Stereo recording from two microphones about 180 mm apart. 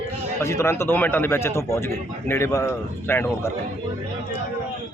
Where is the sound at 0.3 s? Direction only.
15° left (ahead or behind).